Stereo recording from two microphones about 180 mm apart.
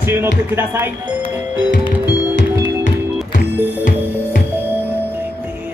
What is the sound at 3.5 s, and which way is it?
Music, 10° right (ahead or behind).